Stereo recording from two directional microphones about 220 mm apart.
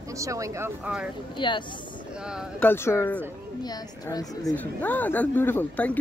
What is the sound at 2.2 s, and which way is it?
Speech, 5° right (ahead or behind).